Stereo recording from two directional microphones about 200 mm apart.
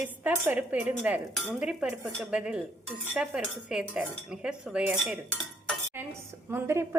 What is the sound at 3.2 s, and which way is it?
Cutlery, 5° right (ahead or behind).